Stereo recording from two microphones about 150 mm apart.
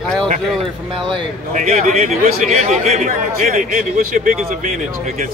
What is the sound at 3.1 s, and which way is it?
A man's voice, 75° right (ahead or behind).